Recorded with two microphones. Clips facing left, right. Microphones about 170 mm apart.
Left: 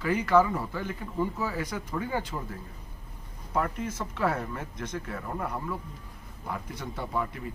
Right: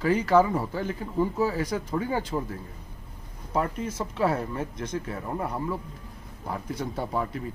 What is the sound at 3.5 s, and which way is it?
Speech, 30° right (ahead or behind).